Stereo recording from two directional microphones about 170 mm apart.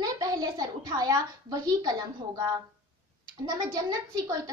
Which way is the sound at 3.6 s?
20° right (ahead or behind).